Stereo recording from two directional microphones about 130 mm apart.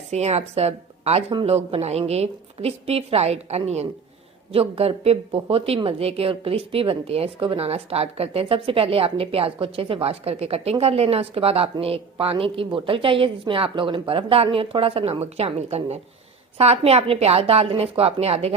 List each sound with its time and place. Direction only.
0.1 s a woman's voice: 55° right (ahead or behind)